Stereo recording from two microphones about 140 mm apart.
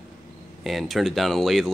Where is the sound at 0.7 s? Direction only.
Centre (ahead or behind).